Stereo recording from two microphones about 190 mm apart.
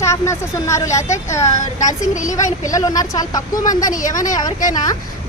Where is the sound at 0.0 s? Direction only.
15° left (ahead or behind).